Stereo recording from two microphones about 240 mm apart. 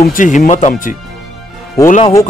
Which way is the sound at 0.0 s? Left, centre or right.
Left.